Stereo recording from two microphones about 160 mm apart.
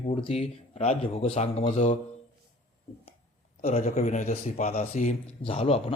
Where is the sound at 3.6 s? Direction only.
45° left (ahead or behind).